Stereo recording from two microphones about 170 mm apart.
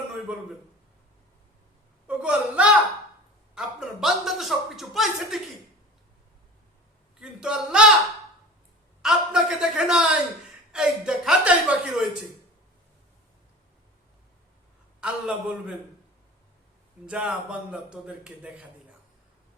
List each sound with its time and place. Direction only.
2.0 s a man's voice: 5° right (ahead or behind)
7.2 s a man's voice: 5° right (ahead or behind)
9.0 s a man's voice: 5° right (ahead or behind)
15.0 s a man's voice: 5° right (ahead or behind)
17.1 s a man's voice: 5° right (ahead or behind)